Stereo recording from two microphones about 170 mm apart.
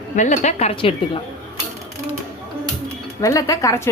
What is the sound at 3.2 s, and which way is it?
Speech, 20° left (ahead or behind).